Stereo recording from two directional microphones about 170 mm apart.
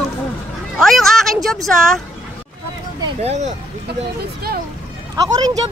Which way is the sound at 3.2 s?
40° right (ahead or behind).